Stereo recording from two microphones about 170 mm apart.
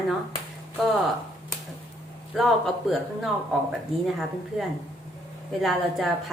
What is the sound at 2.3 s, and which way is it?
Speech, centre (ahead or behind).